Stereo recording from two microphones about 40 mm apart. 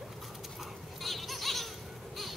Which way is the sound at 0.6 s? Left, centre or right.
Centre.